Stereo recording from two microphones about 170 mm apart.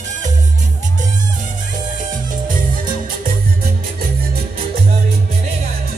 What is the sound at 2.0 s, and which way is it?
Music, 50° right (ahead or behind).